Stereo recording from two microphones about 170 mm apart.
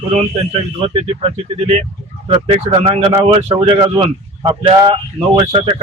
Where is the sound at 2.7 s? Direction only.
35° right (ahead or behind).